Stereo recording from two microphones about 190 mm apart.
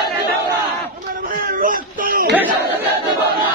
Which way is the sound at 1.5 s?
45° right (ahead or behind).